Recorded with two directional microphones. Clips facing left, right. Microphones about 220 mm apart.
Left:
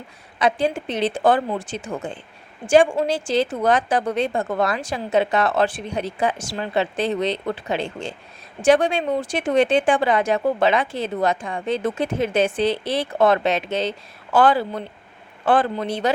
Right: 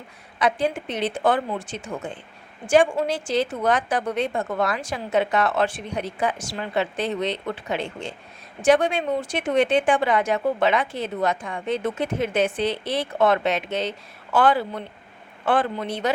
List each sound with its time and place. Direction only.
0.3 s a woman's voice: 25° left (ahead or behind)